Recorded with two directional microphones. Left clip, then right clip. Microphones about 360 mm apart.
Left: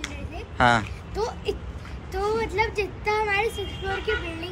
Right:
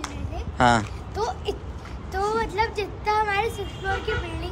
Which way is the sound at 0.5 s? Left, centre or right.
Centre.